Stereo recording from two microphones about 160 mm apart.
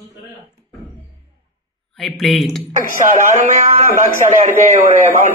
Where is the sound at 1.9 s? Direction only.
Centre (ahead or behind).